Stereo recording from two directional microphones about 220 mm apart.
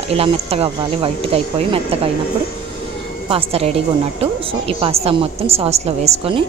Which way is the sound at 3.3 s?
25° right (ahead or behind).